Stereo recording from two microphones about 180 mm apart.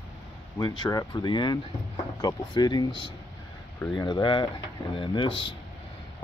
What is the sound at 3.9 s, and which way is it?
Speech, 25° left (ahead or behind).